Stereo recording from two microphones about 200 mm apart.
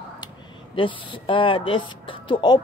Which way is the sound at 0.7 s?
25° left (ahead or behind).